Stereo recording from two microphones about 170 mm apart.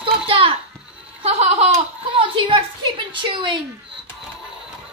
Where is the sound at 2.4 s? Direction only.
25° right (ahead or behind).